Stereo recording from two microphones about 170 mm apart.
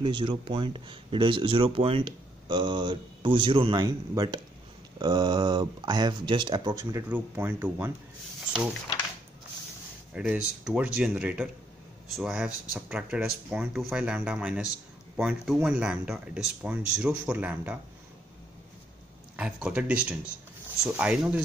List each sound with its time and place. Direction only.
0.0 s speech: 25° right (ahead or behind); by 7.9 s 10° right (ahead or behind)
10.1 s speech: 5° right (ahead or behind)
19.3 s speech: 5° right (ahead or behind)